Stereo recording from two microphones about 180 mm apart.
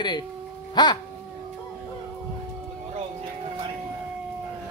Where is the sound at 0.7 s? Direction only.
25° left (ahead or behind).